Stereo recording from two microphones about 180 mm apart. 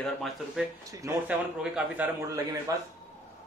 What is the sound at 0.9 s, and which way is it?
Speech, 15° right (ahead or behind).